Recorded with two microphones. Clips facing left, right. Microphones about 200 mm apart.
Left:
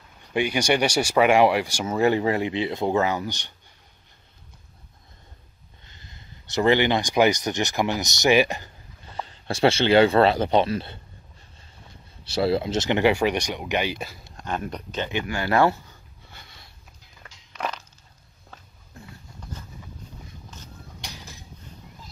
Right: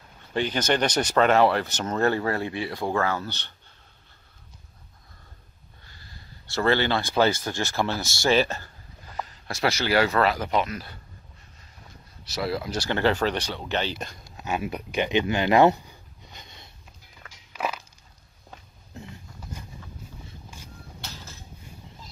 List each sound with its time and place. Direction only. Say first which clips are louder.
0.3 s speech: left 2 dB; 10° left (ahead or behind)
5.9 s speech: left 1 dB; 20° left (ahead or behind)
9.0 s speech: left 2 dB; 30° left (ahead or behind)
12.3 s speech: left 6 dB; 30° left (ahead or behind); by 14.2 s 5° left (ahead or behind)
14.3 s speech: right 2 dB; 5° right (ahead or behind)
17.5 s a sound: right 1 dB; 5° right (ahead or behind)
20.4 s vehicle: left 1 dB; 10° right (ahead or behind)
21.0 s a sound: left 1 dB; 15° left (ahead or behind)